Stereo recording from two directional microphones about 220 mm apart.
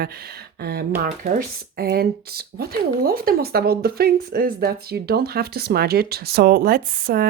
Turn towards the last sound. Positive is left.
turn(degrees=-45)  # may be behind; listen again after turning